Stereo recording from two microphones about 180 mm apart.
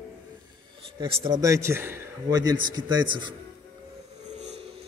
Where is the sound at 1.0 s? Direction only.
20° right (ahead or behind).